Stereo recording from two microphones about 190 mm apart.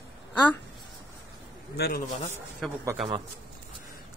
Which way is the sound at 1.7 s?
55° left (ahead or behind).